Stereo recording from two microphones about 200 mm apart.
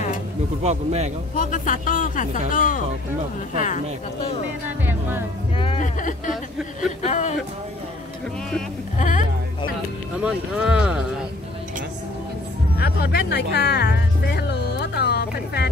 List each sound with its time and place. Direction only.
0.7 s a man's voice: 35° right (ahead or behind)
1.3 s speech: 40° left (ahead or behind)
4.6 s music: 10° right (ahead or behind)
5.6 s music: 25° left (ahead or behind)
5.9 s speech: 40° left (ahead or behind)
8.9 s speech: 40° left (ahead or behind)
10.2 s speech: 5° right (ahead or behind)
12.7 s music: 50° left (ahead or behind)